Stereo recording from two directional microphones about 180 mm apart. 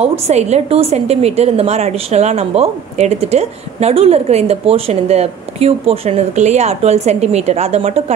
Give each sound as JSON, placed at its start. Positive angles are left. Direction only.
{"t": 0.0, "sound": "a woman's voice", "side_deg": -35}